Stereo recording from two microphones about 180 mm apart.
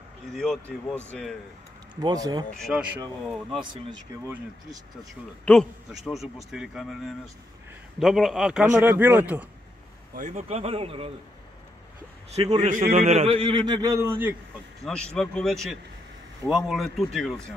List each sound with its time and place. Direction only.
0.3 s a man's voice: 5° left (ahead or behind)
2.0 s a man's voice: 20° right (ahead or behind)
2.5 s a man's voice: centre (ahead or behind)
5.4 s a man's voice: 5° left (ahead or behind)
10.1 s speech: 40° right (ahead or behind)
12.4 s a man's voice: 35° right (ahead or behind)
13.1 s a man's voice: 35° right (ahead or behind); by 14.3 s 10° right (ahead or behind)
14.9 s a man's voice: 5° left (ahead or behind)